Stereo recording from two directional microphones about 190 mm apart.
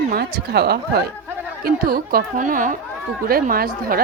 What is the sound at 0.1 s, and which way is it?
Speech, 55° right (ahead or behind).